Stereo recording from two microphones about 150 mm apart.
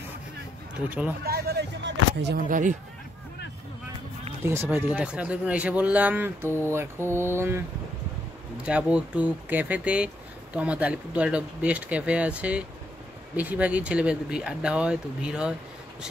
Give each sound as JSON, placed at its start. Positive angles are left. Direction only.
{"t": 0.8, "sound": "speech", "side_deg": -10}
{"t": 1.2, "sound": "hubbub", "side_deg": -90}
{"t": 2.3, "sound": "speech", "side_deg": -60}
{"t": 4.5, "sound": "speech", "side_deg": -15}
{"t": 8.6, "sound": "speech", "side_deg": -5}